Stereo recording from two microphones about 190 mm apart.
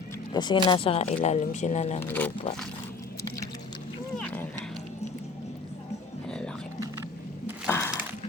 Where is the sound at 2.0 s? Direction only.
10° left (ahead or behind).